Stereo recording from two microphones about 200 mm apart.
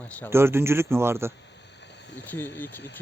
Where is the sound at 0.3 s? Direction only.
10° right (ahead or behind).